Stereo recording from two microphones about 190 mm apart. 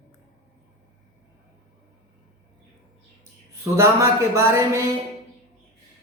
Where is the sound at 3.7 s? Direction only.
15° right (ahead or behind).